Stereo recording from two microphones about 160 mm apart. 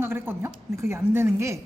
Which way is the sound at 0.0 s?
15° right (ahead or behind).